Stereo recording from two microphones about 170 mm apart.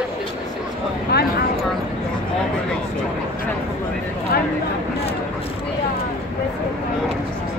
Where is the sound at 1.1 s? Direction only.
70° left (ahead or behind).